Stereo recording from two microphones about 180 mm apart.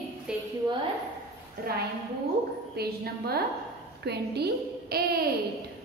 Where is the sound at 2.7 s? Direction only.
60° right (ahead or behind).